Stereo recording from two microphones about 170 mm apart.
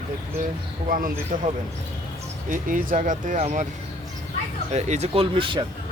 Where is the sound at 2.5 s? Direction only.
55° right (ahead or behind).